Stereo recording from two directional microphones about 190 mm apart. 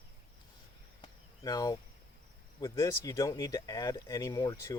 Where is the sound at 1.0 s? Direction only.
20° left (ahead or behind).